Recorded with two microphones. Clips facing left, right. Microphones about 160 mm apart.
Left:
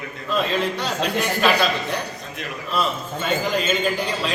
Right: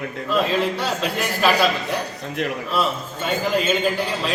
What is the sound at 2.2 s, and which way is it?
Speech, 70° right (ahead or behind).